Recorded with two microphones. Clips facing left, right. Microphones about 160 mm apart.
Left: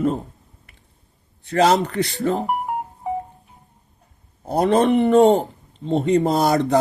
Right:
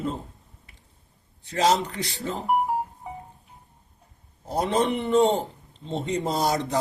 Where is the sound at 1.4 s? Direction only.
60° left (ahead or behind).